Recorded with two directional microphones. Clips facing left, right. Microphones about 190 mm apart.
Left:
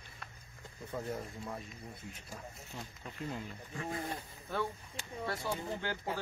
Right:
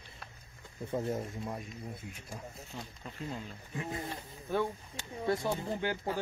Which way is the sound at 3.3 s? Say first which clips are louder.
Right 1 dB; 20° right (ahead or behind).